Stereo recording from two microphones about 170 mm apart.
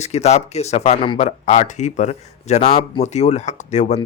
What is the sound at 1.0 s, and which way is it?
Speech, 30° left (ahead or behind).